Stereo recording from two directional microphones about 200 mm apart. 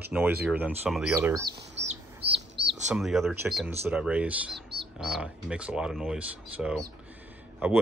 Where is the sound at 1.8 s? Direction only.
60° right (ahead or behind).